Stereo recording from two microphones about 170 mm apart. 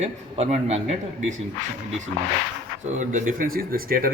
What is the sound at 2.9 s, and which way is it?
A man's voice, 50° right (ahead or behind).